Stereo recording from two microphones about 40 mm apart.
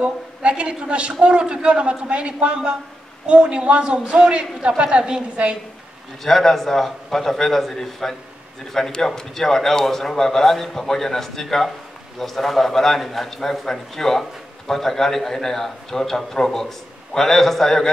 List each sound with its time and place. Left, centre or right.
0.0 s a woman's voice: right
6.2 s a man's voice: centre